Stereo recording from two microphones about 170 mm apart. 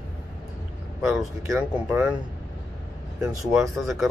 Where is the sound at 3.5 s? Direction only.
Centre (ahead or behind).